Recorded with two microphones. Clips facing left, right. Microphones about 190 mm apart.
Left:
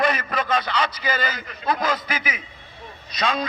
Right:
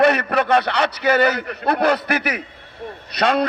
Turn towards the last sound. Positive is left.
turn(degrees=-65)  # may be behind; listen again after turning